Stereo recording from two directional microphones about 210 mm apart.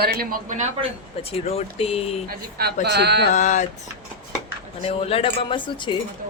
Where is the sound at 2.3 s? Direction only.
45° right (ahead or behind).